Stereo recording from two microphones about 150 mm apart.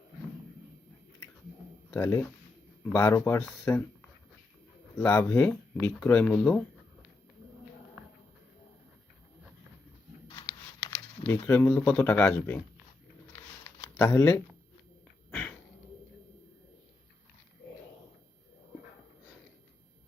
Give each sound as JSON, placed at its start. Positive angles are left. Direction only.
{"t": 1.9, "sound": "speech", "side_deg": 20}
{"t": 4.9, "sound": "speech", "side_deg": 15}
{"t": 10.2, "sound": "a sound", "side_deg": 30}
{"t": 11.3, "sound": "speech", "side_deg": 20}
{"t": 13.7, "sound": "shuffling cards", "side_deg": 15}
{"t": 15.3, "sound": "a sound", "side_deg": 10}